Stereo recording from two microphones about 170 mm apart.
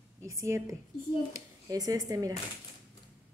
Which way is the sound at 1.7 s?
20° right (ahead or behind).